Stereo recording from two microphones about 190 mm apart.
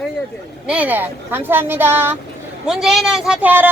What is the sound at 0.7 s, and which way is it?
Speech, 10° right (ahead or behind).